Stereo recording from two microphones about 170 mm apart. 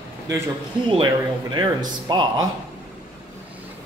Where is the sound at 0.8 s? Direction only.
30° right (ahead or behind).